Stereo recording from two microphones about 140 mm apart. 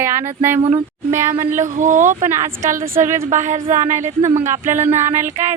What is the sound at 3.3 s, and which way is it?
Speech, 60° right (ahead or behind).